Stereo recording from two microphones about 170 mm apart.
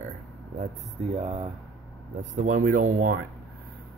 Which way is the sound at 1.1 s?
35° right (ahead or behind).